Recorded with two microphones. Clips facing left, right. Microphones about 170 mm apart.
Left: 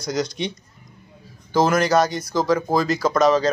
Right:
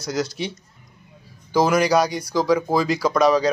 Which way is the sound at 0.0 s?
5° right (ahead or behind).